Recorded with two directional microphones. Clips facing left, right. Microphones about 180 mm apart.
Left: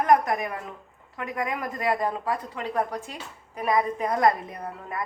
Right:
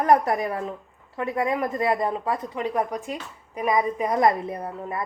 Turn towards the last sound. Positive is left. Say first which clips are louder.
# right 4 dB
turn(degrees=-25)  # may be behind; listen again after turning